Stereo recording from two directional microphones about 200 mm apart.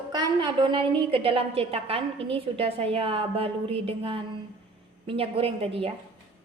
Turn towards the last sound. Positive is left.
turn(degrees=-30)  # may be behind; listen again after turning